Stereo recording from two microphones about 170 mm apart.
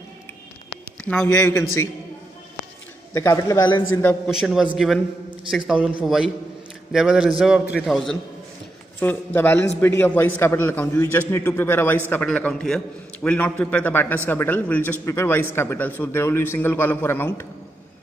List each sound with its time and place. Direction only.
1.0 s a man's voice: 15° left (ahead or behind)
3.1 s a man's voice: 20° left (ahead or behind)
4.3 s a man's voice: centre (ahead or behind)
9.0 s a man's voice: 10° left (ahead or behind)